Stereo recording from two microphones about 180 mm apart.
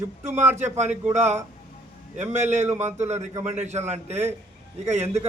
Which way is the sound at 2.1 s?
40° right (ahead or behind).